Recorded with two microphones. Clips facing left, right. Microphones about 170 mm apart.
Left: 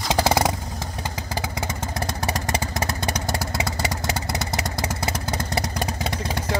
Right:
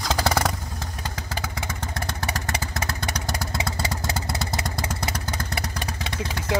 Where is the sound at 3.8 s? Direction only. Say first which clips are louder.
Left 2 dB; 15° left (ahead or behind).